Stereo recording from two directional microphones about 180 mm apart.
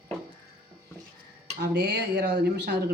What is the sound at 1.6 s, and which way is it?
Speech, 65° right (ahead or behind).